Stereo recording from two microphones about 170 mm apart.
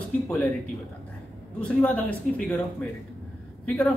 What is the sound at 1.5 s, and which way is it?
Speech, 10° left (ahead or behind).